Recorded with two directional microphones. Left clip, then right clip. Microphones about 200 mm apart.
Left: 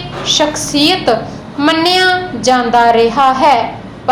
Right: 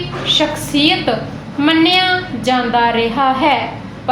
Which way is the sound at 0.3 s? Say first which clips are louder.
Left 3 dB; 25° left (ahead or behind).